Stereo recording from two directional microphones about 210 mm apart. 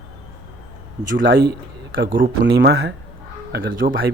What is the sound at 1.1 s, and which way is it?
Speech, 60° right (ahead or behind).